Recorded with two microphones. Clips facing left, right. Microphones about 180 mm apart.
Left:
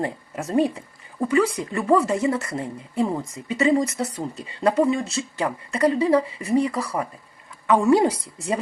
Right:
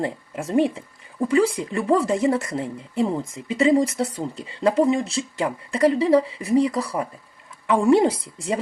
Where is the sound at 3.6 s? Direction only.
30° right (ahead or behind).